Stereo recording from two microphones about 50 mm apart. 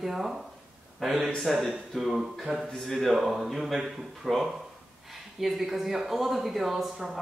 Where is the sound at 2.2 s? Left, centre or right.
Centre.